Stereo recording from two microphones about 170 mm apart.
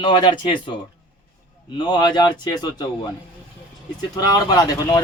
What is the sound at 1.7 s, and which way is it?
Speech, 25° left (ahead or behind).